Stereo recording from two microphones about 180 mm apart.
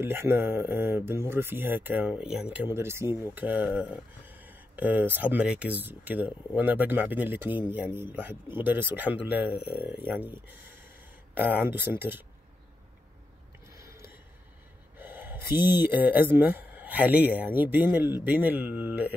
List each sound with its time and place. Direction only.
0.0 s speech: 10° right (ahead or behind)
13.7 s a sound: 15° right (ahead or behind)
15.0 s speech: 10° right (ahead or behind)